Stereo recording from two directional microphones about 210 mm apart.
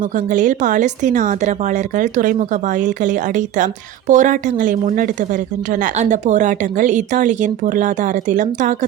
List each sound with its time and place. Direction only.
0.3 s a woman's voice: 35° right (ahead or behind)